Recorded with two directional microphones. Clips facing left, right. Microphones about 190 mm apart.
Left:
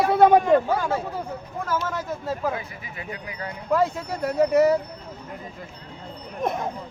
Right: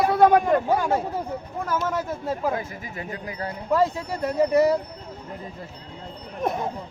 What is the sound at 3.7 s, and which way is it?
Speech, centre (ahead or behind).